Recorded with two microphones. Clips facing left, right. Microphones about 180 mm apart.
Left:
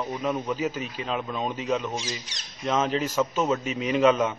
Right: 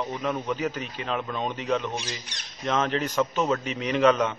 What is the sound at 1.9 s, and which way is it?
Speech, 60° right (ahead or behind).